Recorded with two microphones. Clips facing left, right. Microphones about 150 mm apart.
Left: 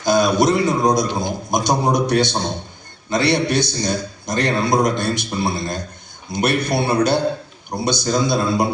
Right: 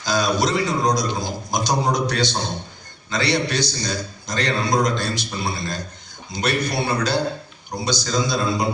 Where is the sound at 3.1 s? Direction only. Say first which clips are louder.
Left 4 dB; 55° left (ahead or behind).